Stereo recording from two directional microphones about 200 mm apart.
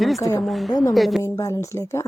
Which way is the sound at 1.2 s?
15° left (ahead or behind).